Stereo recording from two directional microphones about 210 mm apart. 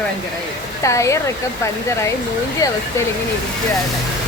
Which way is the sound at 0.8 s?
15° left (ahead or behind).